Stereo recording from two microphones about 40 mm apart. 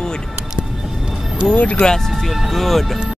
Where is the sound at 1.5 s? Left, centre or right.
Left.